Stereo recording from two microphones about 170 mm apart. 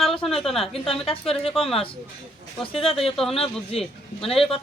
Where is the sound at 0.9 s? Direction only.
35° left (ahead or behind).